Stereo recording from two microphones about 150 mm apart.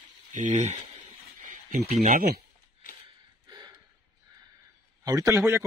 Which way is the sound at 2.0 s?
65° right (ahead or behind).